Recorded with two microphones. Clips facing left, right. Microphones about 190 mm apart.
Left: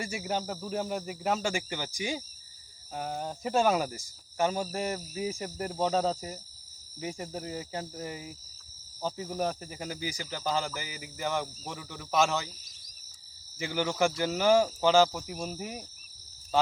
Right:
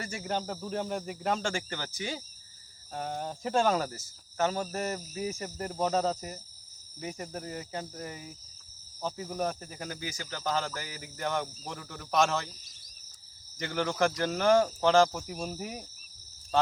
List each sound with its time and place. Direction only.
0.0 s speech: 5° left (ahead or behind)
2.9 s cricket: 5° left (ahead or behind)
7.4 s cricket: 15° left (ahead or behind)
9.8 s speech: 10° left (ahead or behind)
13.6 s speech: 5° left (ahead or behind)